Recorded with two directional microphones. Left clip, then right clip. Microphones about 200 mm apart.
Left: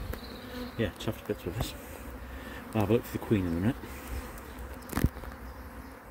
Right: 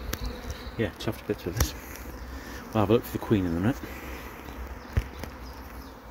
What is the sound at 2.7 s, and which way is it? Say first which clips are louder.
Speech: right 4 dB; centre (ahead or behind).